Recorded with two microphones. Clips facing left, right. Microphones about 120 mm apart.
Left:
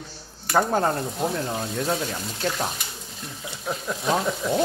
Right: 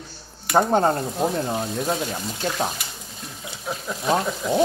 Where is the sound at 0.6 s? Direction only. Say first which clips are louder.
Right 3 dB; 25° right (ahead or behind).